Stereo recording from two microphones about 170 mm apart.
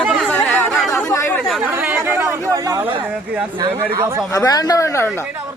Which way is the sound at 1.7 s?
10° right (ahead or behind).